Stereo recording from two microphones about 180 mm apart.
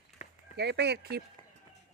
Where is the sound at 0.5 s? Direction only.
70° right (ahead or behind).